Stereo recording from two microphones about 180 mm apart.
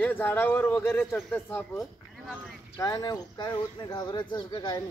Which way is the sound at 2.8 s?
20° left (ahead or behind).